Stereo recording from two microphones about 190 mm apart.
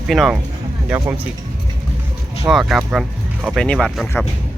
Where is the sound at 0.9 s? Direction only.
15° right (ahead or behind).